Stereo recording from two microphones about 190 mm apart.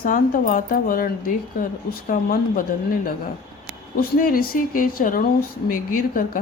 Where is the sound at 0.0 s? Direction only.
45° left (ahead or behind).